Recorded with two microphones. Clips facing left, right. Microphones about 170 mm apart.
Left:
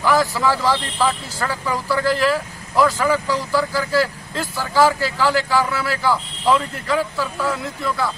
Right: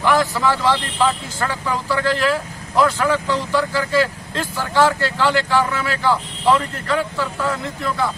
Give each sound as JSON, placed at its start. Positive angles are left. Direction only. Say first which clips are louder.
{"t": 0.1, "sound": "a man's voice", "louder": "even", "side_deg": 5}